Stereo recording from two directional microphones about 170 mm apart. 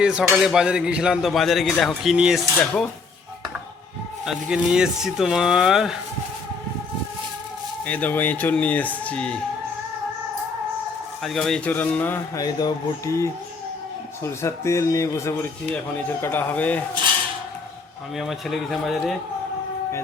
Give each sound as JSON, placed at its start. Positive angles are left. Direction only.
{"t": 0.0, "sound": "a man's voice", "side_deg": -5}
{"t": 4.3, "sound": "a man's voice", "side_deg": -5}
{"t": 7.9, "sound": "speech", "side_deg": 10}
{"t": 11.2, "sound": "speech", "side_deg": 0}
{"t": 12.4, "sound": "speech", "side_deg": 25}
{"t": 18.2, "sound": "a man's voice", "side_deg": 0}